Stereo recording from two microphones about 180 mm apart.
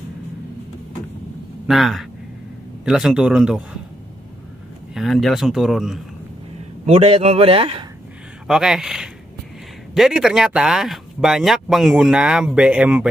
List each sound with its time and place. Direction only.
1.7 s speech: centre (ahead or behind)
4.9 s speech: centre (ahead or behind)
6.9 s speech: 35° right (ahead or behind)
8.5 s speech: 5° right (ahead or behind)